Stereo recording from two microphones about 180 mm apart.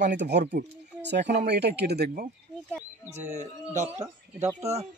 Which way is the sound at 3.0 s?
40° right (ahead or behind).